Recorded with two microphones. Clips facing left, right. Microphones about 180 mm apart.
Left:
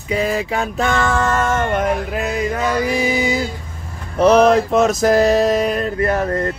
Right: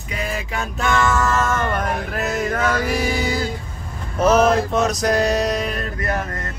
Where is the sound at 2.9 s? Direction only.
20° left (ahead or behind).